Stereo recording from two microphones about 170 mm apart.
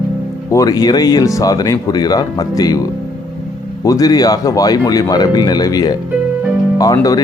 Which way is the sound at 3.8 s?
20° left (ahead or behind).